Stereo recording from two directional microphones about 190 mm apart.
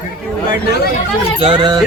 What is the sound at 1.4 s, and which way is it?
Speech, 20° right (ahead or behind).